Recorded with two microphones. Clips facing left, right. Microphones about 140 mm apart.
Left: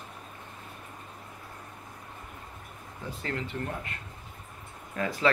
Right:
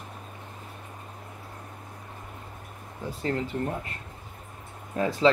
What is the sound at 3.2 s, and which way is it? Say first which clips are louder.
Speech: right 6 dB; 30° right (ahead or behind).